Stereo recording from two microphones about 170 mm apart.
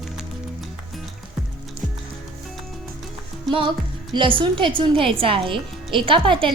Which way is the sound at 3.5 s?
30° right (ahead or behind).